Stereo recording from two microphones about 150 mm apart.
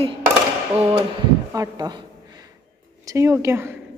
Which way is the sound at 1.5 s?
25° right (ahead or behind).